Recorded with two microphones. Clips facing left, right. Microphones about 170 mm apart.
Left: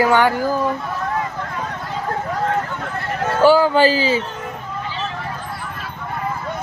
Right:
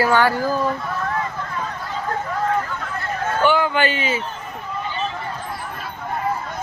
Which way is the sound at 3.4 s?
35° left (ahead or behind).